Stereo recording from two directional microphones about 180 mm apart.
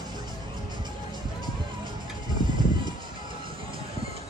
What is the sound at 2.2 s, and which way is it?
Music, 25° right (ahead or behind).